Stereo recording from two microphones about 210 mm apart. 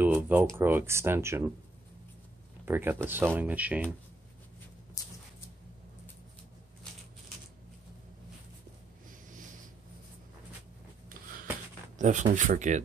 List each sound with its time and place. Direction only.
0.0 s a sound: 10° right (ahead or behind)
0.6 s speech: 10° right (ahead or behind)
2.6 s speech: 10° right (ahead or behind)
12.0 s speech: 35° right (ahead or behind)